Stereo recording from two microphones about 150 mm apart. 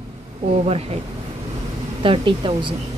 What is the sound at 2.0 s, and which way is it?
Speech, 35° right (ahead or behind).